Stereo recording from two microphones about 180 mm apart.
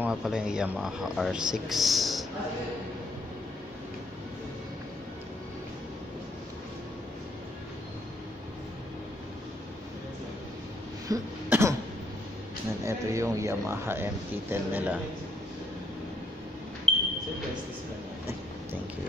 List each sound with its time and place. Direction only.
0.0 s speech: 5° right (ahead or behind)
11.1 s cough: 20° right (ahead or behind)
12.8 s speech: 15° right (ahead or behind)
16.9 s a sound: 35° right (ahead or behind)